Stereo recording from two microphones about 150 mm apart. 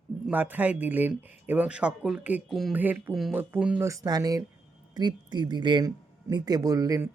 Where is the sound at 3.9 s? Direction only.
25° right (ahead or behind).